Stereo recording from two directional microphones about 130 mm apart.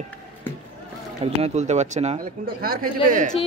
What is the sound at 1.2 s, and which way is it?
Speech, 55° right (ahead or behind).